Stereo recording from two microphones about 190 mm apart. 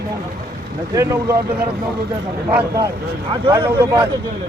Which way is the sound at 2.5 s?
10° right (ahead or behind).